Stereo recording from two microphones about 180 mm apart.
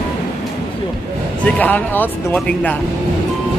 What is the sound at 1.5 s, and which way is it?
Speech, 10° left (ahead or behind).